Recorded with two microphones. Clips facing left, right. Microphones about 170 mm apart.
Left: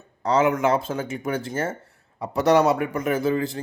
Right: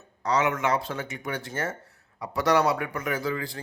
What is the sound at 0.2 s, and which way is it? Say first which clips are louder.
Speech: left 5 dB; 30° left (ahead or behind).